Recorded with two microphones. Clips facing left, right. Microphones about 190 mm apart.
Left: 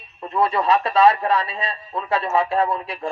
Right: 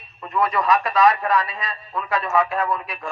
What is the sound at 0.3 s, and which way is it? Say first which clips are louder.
A man's voice: left 1 dB; 30° left (ahead or behind).